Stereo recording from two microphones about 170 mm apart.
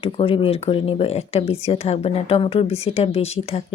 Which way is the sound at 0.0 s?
35° left (ahead or behind).